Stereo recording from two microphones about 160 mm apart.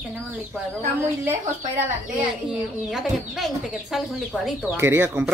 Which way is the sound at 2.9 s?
Centre (ahead or behind).